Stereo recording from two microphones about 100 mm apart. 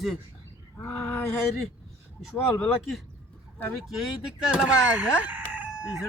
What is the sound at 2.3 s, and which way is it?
Speech, 20° left (ahead or behind).